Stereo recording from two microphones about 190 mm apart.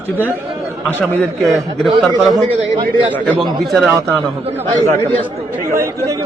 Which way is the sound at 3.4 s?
Centre (ahead or behind).